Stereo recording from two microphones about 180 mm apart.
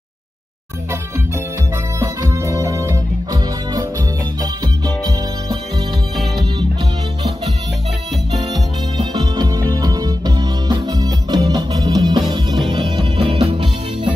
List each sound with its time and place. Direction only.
2.0 s music: 15° right (ahead or behind)
4.4 s music: 20° right (ahead or behind)
8.9 s music: 25° right (ahead or behind)